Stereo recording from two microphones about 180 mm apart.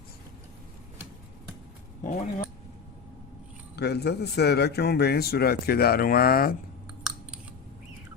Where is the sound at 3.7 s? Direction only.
65° left (ahead or behind).